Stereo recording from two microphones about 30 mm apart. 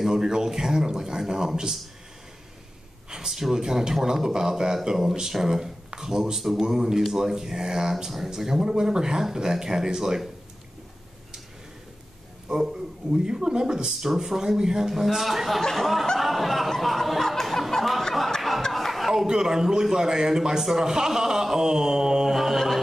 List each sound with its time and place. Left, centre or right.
0.1 s speech: centre
3.3 s speech: centre
12.4 s speech: centre
13.8 s speech: centre
16.2 s music: centre
18.7 s chuckle: centre
19.1 s speech: centre
22.3 s mantra: centre